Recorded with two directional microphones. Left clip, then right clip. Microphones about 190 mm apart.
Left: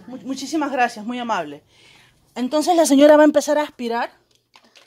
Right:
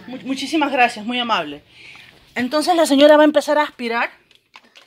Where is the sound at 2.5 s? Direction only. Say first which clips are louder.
Even; 25° left (ahead or behind).